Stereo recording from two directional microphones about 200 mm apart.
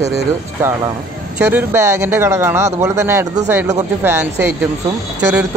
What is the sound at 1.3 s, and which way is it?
Speech, 10° right (ahead or behind).